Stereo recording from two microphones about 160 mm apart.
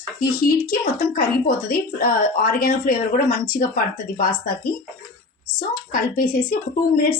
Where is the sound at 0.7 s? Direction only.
65° left (ahead or behind).